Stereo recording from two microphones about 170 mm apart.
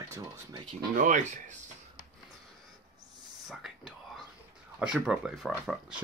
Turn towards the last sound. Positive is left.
turn(degrees=-5)  # may be behind; listen again after turning